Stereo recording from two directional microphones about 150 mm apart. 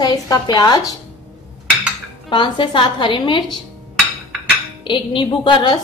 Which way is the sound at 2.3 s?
30° left (ahead or behind).